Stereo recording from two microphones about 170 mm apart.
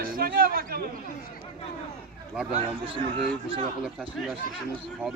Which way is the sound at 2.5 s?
40° right (ahead or behind).